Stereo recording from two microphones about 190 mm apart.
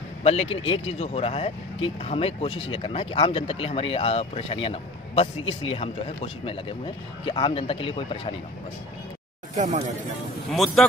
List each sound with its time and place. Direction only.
0.2 s a man's voice: 30° left (ahead or behind)
9.6 s speech: 40° right (ahead or behind)
10.5 s speech: centre (ahead or behind)